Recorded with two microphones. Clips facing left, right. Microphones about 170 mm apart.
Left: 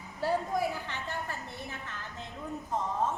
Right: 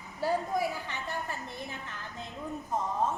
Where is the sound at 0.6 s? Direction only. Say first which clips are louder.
Even; 15° right (ahead or behind).